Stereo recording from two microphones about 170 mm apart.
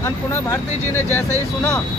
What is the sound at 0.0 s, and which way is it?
Speech, 15° left (ahead or behind).